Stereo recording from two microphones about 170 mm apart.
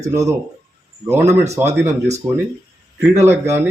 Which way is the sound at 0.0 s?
20° right (ahead or behind).